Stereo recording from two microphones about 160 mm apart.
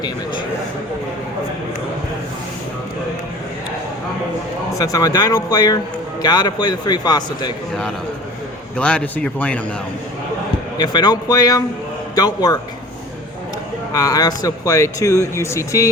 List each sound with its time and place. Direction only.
4.8 s speech: 20° left (ahead or behind)
8.8 s speech: 10° left (ahead or behind)
10.8 s speech: 25° left (ahead or behind)
13.9 s speech: 25° left (ahead or behind)